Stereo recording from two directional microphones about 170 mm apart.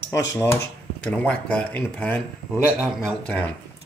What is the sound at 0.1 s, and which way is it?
Speech, 15° left (ahead or behind).